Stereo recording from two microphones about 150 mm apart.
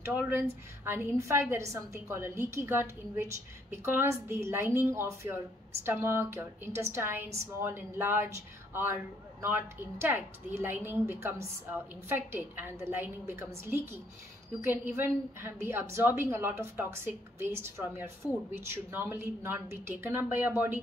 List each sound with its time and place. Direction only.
0.0 s a woman's voice: 15° right (ahead or behind)